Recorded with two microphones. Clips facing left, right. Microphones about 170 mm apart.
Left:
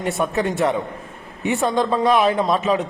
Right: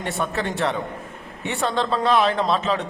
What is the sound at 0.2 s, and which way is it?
A man's voice, 10° left (ahead or behind).